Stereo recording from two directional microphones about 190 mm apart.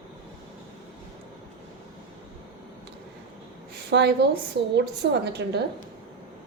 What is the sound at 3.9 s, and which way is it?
A woman's voice, 60° right (ahead or behind).